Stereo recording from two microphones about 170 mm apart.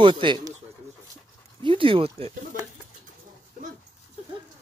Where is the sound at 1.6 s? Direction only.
30° right (ahead or behind).